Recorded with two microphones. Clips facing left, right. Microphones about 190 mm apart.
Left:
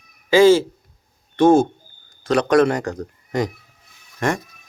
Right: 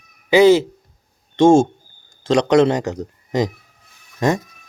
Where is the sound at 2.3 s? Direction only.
20° right (ahead or behind).